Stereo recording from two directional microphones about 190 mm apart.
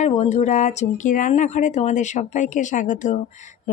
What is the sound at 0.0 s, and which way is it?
Speech, 35° left (ahead or behind).